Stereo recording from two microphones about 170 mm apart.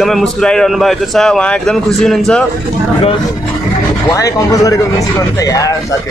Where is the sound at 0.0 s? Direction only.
Centre (ahead or behind).